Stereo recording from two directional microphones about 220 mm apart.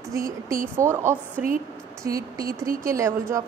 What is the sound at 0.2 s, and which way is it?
Speech, 40° right (ahead or behind).